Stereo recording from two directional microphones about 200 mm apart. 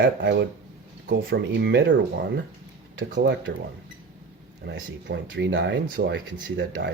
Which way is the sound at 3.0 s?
70° right (ahead or behind).